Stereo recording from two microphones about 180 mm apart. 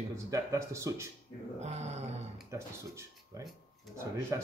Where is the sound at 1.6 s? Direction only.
40° right (ahead or behind).